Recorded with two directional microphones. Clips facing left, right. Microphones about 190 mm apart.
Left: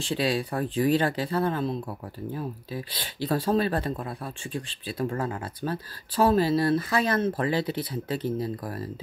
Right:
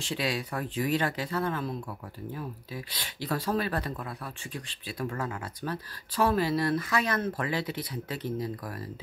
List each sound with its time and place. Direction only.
0.0 s speech: 30° left (ahead or behind)